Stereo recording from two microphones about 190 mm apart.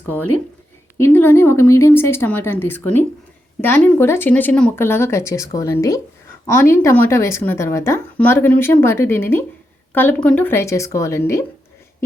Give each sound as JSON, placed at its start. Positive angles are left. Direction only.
{"t": 0.9, "sound": "a woman's voice", "side_deg": 10}